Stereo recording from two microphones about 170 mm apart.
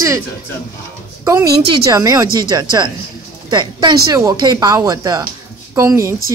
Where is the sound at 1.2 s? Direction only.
20° right (ahead or behind).